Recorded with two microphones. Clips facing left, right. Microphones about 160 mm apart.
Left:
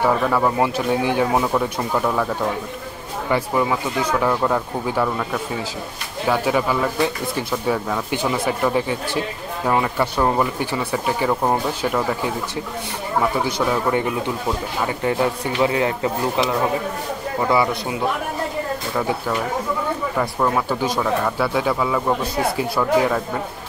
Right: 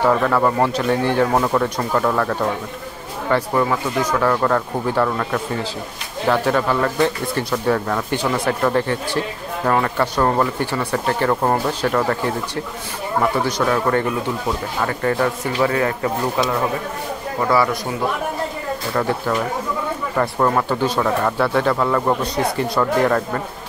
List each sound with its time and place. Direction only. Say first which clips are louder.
0.0 s speech: right 2 dB; 5° left (ahead or behind)
13.6 s speech: right 1 dB; 10° left (ahead or behind)
17.5 s speech: right 1 dB; 20° left (ahead or behind)
18.9 s speech: right 3 dB; 10° left (ahead or behind)